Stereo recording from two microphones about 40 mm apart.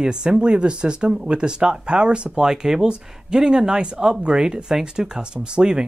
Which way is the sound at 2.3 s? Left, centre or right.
Centre.